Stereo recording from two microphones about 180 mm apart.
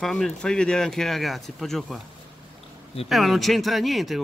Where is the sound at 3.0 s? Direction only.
Centre (ahead or behind).